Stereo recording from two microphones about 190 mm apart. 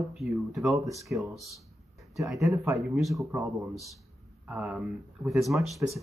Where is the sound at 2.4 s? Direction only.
15° right (ahead or behind).